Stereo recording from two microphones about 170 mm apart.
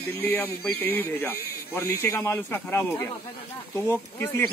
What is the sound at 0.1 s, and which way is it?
Speech, 10° left (ahead or behind).